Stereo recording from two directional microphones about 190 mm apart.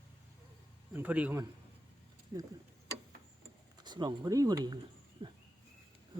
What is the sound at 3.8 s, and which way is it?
Speech, 20° right (ahead or behind).